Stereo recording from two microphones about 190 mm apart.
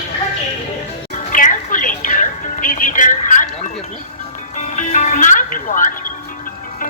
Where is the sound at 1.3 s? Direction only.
45° left (ahead or behind).